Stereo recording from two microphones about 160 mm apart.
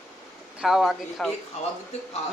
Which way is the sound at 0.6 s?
5° right (ahead or behind).